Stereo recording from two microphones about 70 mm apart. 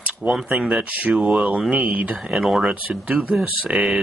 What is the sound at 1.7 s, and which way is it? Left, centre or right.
Speech, right.